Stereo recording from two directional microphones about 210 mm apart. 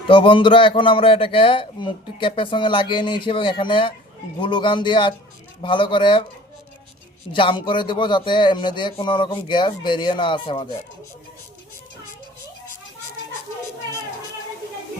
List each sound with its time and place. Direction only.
0.1 s a man's voice: 25° left (ahead or behind)
7.3 s a man's voice: 20° left (ahead or behind)